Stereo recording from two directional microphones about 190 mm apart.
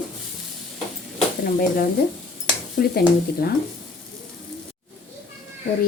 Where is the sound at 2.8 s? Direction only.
55° left (ahead or behind).